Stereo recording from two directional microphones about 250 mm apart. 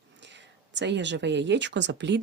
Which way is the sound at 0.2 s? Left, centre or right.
Right.